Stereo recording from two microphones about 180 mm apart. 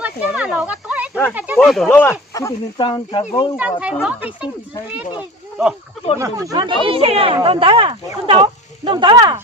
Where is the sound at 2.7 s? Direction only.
25° left (ahead or behind).